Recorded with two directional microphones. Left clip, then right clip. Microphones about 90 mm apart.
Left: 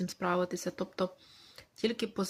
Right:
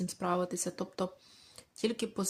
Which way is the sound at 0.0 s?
40° right (ahead or behind).